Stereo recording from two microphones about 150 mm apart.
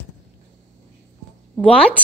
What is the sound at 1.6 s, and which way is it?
Speech, 10° left (ahead or behind).